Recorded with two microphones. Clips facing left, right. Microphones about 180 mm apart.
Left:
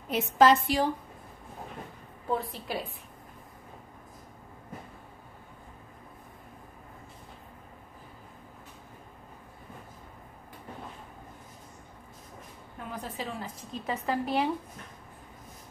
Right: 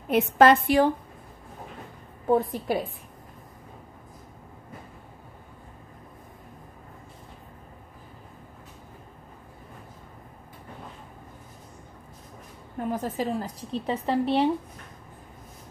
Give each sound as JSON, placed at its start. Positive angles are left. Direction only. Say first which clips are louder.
{"t": 0.1, "sound": "a woman's voice", "louder": "right 4 dB", "side_deg": -60}
{"t": 2.3, "sound": "a woman's voice", "louder": "right 8 dB", "side_deg": -50}
{"t": 12.7, "sound": "a woman's voice", "louder": "right 9 dB", "side_deg": -45}